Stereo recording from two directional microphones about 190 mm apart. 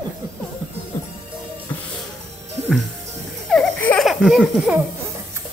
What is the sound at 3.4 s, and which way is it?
Baby laughter, 5° left (ahead or behind).